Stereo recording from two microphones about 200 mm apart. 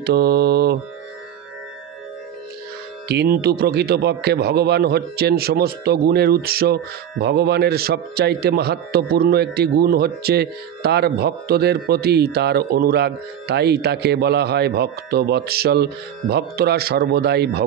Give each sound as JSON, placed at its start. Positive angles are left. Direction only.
{"t": 0.0, "sound": "a man's voice", "side_deg": -55}
{"t": 3.1, "sound": "a man's voice", "side_deg": -50}